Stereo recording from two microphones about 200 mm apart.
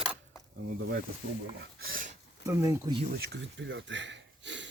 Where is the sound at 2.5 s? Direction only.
15° right (ahead or behind).